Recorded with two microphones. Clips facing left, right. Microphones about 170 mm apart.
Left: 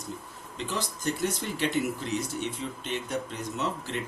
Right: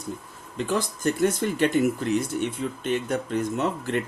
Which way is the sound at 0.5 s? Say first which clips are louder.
Right 7 dB; 50° right (ahead or behind).